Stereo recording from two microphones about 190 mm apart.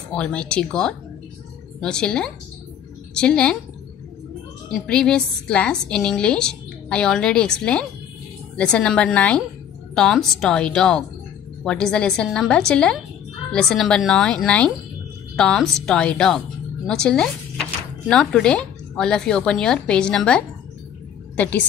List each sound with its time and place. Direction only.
0.1 s a woman's voice: 5° left (ahead or behind)
4.6 s a woman's voice: 5° left (ahead or behind)